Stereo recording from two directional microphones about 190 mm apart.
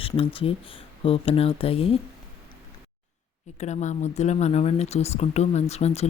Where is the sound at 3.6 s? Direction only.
40° left (ahead or behind).